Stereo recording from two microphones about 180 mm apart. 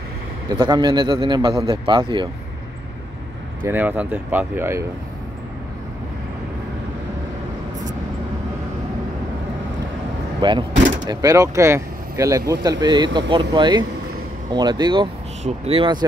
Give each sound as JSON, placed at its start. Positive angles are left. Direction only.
{"t": 0.5, "sound": "speech", "side_deg": -25}
{"t": 3.6, "sound": "speech", "side_deg": -10}
{"t": 10.4, "sound": "speech", "side_deg": -25}